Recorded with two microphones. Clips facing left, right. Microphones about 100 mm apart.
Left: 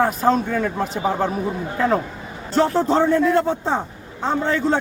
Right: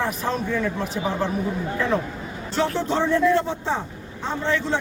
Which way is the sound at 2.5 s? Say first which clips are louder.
Left 6 dB; 40° left (ahead or behind).